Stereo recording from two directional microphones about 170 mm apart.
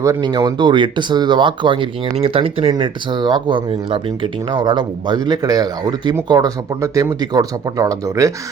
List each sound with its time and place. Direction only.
0.0 s speech: 20° right (ahead or behind)